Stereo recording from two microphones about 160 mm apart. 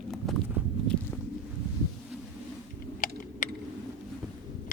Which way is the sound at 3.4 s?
55° left (ahead or behind).